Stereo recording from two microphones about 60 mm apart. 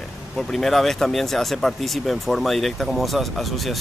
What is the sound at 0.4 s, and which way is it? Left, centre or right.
Speech, centre.